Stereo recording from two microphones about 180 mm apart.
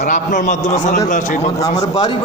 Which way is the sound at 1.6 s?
20° left (ahead or behind).